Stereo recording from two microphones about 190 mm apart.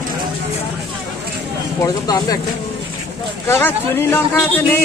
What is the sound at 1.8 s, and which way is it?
Speech, 20° left (ahead or behind).